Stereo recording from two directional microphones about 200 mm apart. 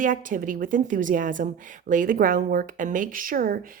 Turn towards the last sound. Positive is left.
turn(degrees=-45)  # may be behind; listen again after turning